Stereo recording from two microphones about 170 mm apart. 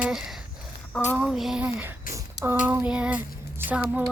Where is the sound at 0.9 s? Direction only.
5° left (ahead or behind).